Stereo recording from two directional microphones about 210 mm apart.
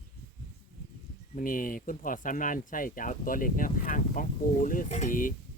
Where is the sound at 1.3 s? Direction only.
40° left (ahead or behind).